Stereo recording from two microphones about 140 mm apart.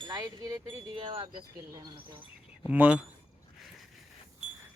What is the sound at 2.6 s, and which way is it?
Speech, 10° right (ahead or behind).